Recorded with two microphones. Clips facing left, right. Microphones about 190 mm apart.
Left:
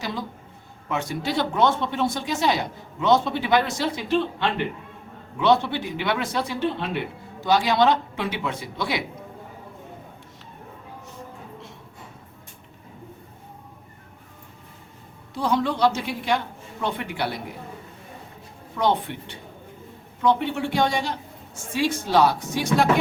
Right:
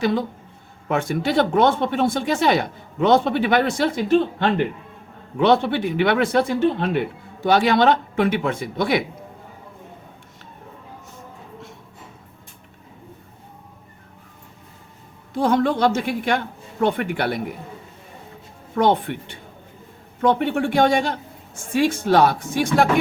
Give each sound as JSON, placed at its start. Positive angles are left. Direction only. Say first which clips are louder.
{"t": 0.0, "sound": "speech", "louder": "right 10 dB", "side_deg": -55}
{"t": 5.4, "sound": "a man's voice", "louder": "right 3 dB", "side_deg": -60}
{"t": 15.3, "sound": "a man's voice", "louder": "right 5 dB", "side_deg": -50}
{"t": 18.7, "sound": "a man's voice", "louder": "right 4 dB", "side_deg": -55}